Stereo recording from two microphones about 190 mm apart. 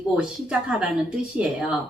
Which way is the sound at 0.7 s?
5° right (ahead or behind).